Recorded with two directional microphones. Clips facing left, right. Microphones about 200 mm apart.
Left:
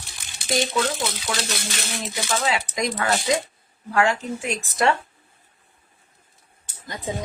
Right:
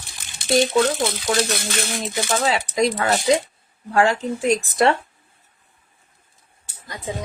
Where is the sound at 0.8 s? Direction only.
50° right (ahead or behind).